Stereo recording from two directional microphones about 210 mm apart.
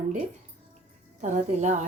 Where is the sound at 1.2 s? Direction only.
35° right (ahead or behind).